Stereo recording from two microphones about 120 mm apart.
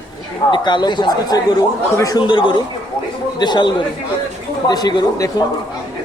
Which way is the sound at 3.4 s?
40° left (ahead or behind).